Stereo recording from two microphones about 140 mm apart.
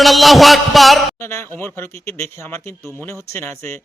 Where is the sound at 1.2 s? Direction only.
15° left (ahead or behind).